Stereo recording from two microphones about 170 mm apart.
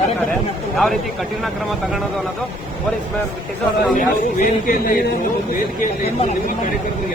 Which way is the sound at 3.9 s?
55° left (ahead or behind).